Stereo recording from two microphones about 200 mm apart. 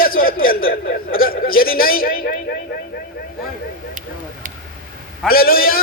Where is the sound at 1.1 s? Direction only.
45° left (ahead or behind).